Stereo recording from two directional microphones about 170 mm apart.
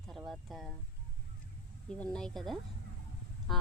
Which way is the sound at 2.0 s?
5° left (ahead or behind).